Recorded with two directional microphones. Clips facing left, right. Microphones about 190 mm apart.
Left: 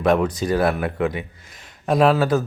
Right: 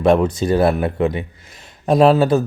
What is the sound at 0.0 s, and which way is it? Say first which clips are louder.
Speech: right 4 dB; 25° right (ahead or behind).